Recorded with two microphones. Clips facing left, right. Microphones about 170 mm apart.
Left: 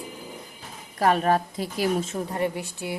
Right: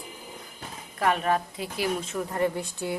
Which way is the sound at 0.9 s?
35° left (ahead or behind).